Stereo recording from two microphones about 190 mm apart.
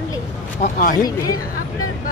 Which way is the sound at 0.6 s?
50° left (ahead or behind).